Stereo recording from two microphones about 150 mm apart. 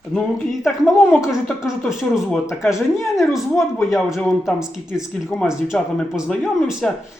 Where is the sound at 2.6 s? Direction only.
20° left (ahead or behind).